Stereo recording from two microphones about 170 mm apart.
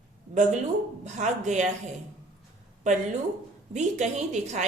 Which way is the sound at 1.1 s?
45° right (ahead or behind).